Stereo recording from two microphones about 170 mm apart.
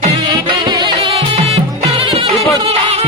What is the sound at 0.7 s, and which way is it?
Music, 25° right (ahead or behind).